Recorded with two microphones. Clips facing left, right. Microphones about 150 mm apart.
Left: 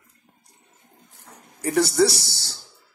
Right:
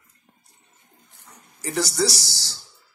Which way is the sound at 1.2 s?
55° left (ahead or behind).